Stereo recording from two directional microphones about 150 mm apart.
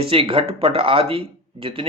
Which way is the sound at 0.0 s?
35° right (ahead or behind).